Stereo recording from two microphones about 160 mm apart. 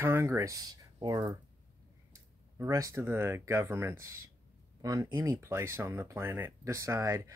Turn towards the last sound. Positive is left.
turn(degrees=-20)  # may be behind; listen again after turning